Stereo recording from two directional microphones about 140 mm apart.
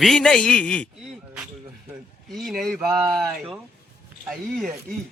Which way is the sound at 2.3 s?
Centre (ahead or behind).